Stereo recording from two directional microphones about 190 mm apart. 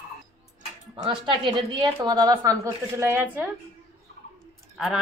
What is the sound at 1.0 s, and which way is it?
A woman's voice, 25° right (ahead or behind).